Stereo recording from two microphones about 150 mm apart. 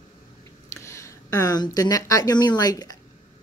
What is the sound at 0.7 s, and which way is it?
Speech, 20° left (ahead or behind).